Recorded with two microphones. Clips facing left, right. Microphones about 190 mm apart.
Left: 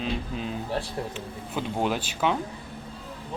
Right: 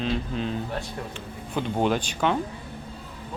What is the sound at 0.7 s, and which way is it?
Speech, 30° left (ahead or behind).